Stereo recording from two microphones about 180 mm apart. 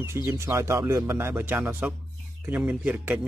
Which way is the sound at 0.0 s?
15° right (ahead or behind).